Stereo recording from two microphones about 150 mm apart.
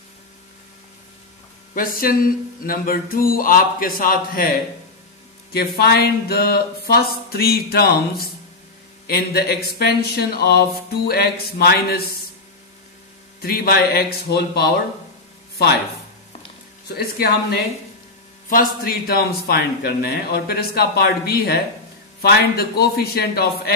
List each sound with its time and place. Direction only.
1.8 s mantra: 70° left (ahead or behind)
5.5 s speech: 90° left
13.4 s speech: 90° left
18.5 s speech: 80° left